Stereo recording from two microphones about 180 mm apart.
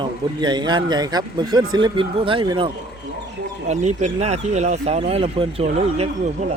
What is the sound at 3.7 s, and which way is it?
Speech, 40° right (ahead or behind).